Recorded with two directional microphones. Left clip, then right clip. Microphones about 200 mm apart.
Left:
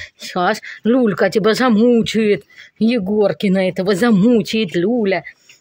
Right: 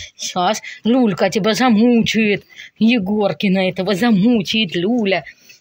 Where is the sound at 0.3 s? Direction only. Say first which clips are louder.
Even; 35° left (ahead or behind).